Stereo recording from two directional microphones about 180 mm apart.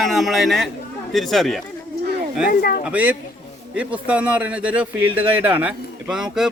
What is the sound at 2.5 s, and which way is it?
Speech, 55° left (ahead or behind).